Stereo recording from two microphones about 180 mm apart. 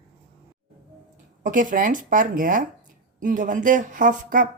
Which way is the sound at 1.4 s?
45° right (ahead or behind).